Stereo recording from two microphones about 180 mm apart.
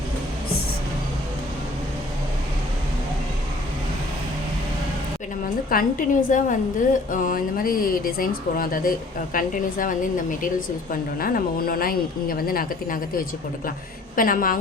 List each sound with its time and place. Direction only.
5.7 s speech: 50° left (ahead or behind)